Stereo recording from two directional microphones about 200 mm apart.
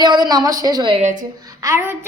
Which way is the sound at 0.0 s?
20° right (ahead or behind).